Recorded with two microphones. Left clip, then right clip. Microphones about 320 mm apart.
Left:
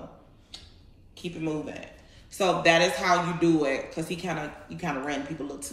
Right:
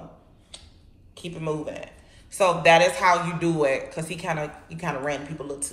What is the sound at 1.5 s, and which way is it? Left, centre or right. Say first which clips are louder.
A woman's voice: right 4 dB; centre.